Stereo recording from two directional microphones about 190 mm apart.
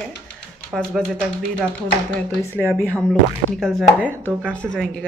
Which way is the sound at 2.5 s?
10° right (ahead or behind).